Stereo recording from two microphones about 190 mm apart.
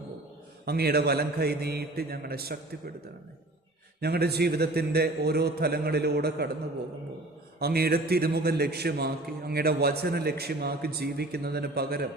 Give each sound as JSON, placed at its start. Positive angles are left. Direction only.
{"t": 0.6, "sound": "a man's voice", "side_deg": -55}
{"t": 4.0, "sound": "a man's voice", "side_deg": -55}
{"t": 7.6, "sound": "a man's voice", "side_deg": -55}